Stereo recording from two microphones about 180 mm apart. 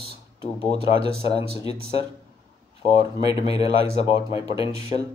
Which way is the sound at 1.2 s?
35° left (ahead or behind).